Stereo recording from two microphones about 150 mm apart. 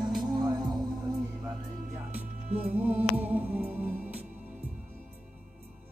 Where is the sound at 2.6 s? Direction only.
10° right (ahead or behind).